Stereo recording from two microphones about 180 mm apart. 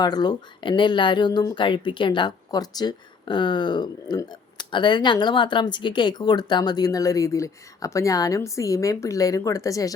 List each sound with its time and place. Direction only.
0.0 s speech: 20° left (ahead or behind)